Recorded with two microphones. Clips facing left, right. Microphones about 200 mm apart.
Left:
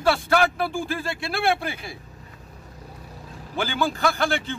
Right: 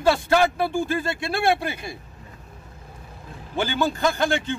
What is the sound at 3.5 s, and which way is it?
Speech, 20° right (ahead or behind).